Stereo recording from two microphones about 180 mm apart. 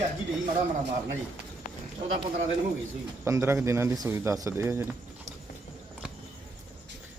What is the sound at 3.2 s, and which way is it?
A man's voice, 15° right (ahead or behind).